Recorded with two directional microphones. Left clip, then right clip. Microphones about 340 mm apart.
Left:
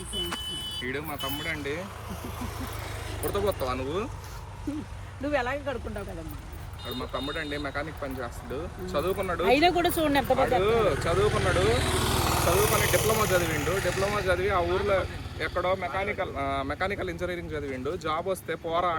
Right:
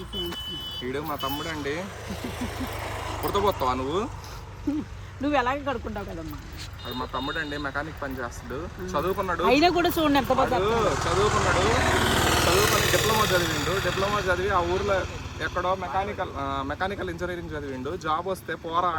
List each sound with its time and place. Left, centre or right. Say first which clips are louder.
0.9 s speech: right 3 dB; centre
1.2 s speech: right 3 dB; centre
1.6 s speech: right 3 dB; right
5.2 s speech: right 4 dB; centre
7.1 s speech: right 2 dB; centre